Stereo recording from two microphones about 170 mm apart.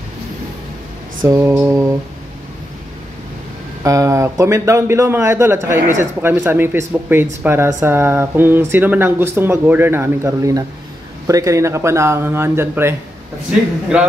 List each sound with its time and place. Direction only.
1.2 s speech: 15° right (ahead or behind)
3.8 s speech: 20° right (ahead or behind)